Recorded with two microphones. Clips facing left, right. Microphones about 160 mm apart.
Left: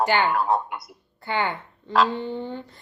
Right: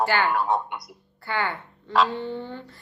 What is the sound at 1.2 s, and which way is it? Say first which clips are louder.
Speech: left 2 dB; 20° left (ahead or behind).